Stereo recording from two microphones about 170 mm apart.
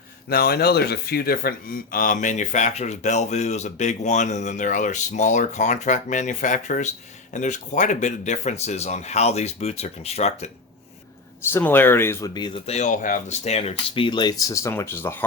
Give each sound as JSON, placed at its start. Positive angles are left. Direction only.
{"t": 0.3, "sound": "speech", "side_deg": 65}
{"t": 11.5, "sound": "speech", "side_deg": 10}